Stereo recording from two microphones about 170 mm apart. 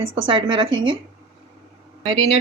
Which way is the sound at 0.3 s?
30° right (ahead or behind).